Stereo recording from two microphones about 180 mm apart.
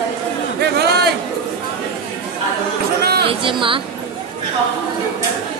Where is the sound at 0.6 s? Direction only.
60° right (ahead or behind).